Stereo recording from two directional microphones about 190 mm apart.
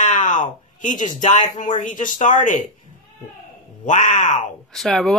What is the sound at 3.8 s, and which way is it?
Speech, 40° left (ahead or behind).